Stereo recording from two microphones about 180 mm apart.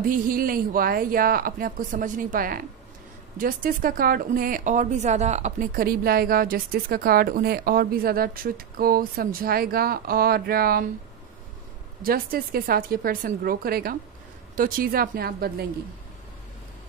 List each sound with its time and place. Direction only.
0.0 s speech: 50° right (ahead or behind)
5.8 s a woman's voice: 55° right (ahead or behind)
12.0 s a woman's voice: 55° right (ahead or behind)